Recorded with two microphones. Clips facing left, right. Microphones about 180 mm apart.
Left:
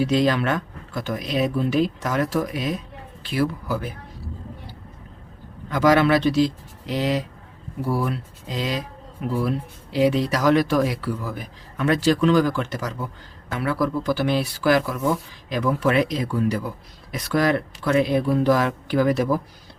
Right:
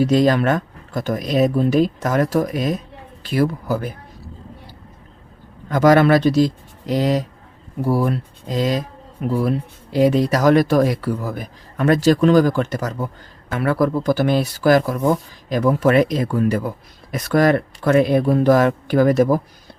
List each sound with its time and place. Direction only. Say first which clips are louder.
0.0 s speech: right 5 dB; 45° right (ahead or behind)
5.6 s speech: right 4 dB; 45° right (ahead or behind)